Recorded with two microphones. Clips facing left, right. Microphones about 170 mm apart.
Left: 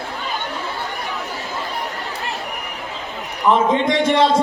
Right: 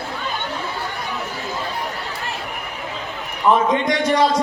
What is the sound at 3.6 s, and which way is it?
Speech, 25° left (ahead or behind).